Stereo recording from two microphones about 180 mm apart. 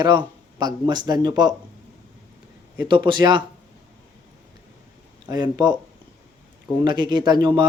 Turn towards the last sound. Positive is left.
turn(degrees=-25)  # may be behind; listen again after turning